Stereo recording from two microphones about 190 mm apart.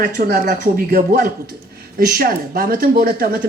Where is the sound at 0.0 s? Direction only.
55° right (ahead or behind).